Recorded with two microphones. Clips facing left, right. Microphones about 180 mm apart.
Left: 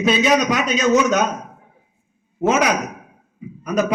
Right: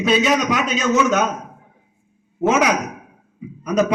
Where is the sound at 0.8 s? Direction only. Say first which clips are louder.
Left 2 dB; 15° left (ahead or behind).